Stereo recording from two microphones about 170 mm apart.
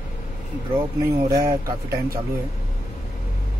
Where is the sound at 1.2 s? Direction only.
20° right (ahead or behind).